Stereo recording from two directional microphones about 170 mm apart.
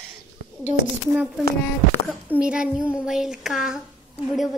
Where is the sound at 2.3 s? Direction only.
5° right (ahead or behind).